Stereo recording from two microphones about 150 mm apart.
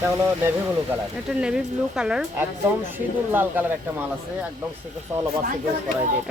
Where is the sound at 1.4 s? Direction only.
5° right (ahead or behind).